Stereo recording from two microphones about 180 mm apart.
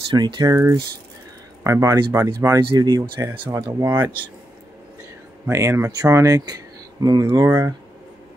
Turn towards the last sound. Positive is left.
turn(degrees=-15)  # may be behind; listen again after turning